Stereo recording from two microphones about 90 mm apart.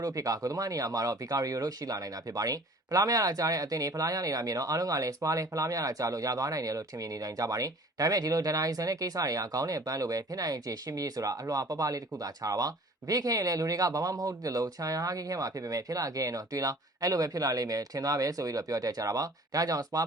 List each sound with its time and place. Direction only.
0.0 s speech: 40° right (ahead or behind)